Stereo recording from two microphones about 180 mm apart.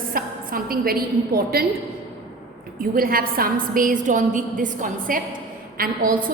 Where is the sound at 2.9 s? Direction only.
55° right (ahead or behind).